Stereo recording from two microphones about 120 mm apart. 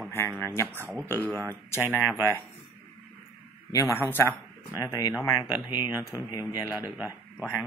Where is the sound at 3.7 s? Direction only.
25° left (ahead or behind).